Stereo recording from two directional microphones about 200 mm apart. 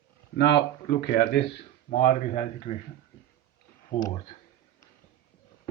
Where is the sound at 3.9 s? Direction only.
25° left (ahead or behind).